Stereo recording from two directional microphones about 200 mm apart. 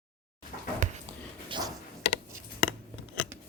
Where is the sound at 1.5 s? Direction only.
20° right (ahead or behind).